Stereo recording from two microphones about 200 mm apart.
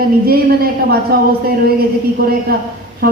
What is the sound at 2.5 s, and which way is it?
Speech, 50° right (ahead or behind).